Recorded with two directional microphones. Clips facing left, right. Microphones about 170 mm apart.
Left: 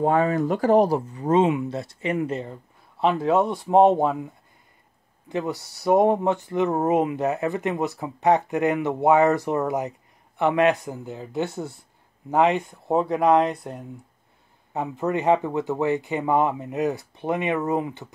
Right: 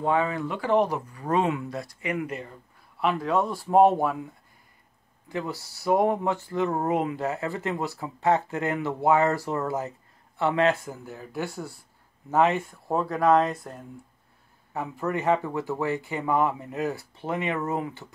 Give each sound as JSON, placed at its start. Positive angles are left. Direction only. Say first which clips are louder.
{"t": 0.0, "sound": "speech", "louder": "left 5 dB", "side_deg": 45}
{"t": 1.1, "sound": "speech", "louder": "left 5 dB", "side_deg": 20}
{"t": 5.3, "sound": "speech", "louder": "left 4 dB", "side_deg": 20}
{"t": 14.7, "sound": "speech", "louder": "left 4 dB", "side_deg": 20}